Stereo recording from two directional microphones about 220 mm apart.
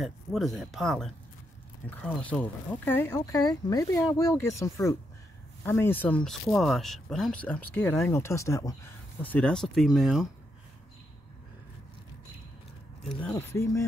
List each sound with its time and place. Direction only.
0.0 s speech: centre (ahead or behind)
13.2 s speech: 10° left (ahead or behind)